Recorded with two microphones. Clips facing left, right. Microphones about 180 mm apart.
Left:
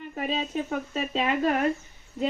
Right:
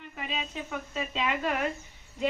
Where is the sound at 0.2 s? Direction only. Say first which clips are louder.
Left 8 dB; 40° left (ahead or behind).